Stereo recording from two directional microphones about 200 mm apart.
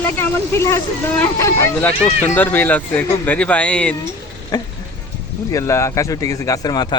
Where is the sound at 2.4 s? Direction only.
10° left (ahead or behind).